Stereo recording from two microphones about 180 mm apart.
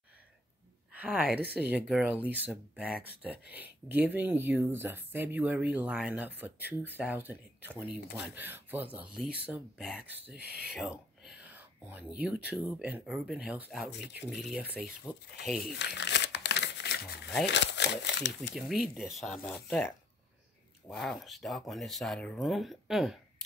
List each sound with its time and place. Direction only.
0.9 s speech: 10° right (ahead or behind)
15.6 s crumpling: 70° left (ahead or behind)
17.5 s speech: 75° left (ahead or behind)
18.5 s speech: centre (ahead or behind)